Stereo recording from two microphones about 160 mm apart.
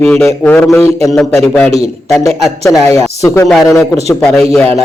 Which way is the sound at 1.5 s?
Centre (ahead or behind).